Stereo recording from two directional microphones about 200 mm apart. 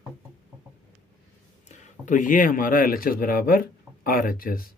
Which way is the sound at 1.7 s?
40° left (ahead or behind).